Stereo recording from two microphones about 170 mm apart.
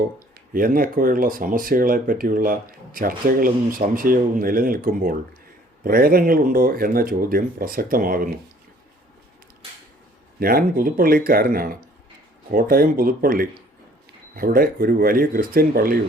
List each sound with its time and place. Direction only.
0.5 s speech: 55° right (ahead or behind)
10.4 s speech: 60° right (ahead or behind)